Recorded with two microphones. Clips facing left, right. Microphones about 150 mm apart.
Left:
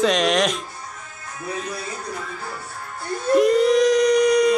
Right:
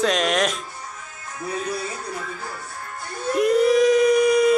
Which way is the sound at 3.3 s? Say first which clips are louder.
Left 2 dB; centre (ahead or behind).